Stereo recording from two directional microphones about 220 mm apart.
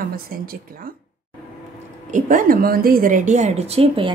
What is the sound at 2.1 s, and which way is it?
A woman's voice, 35° right (ahead or behind).